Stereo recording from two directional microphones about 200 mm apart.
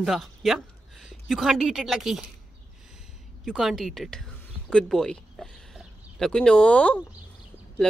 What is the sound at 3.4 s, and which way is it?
Speech, centre (ahead or behind).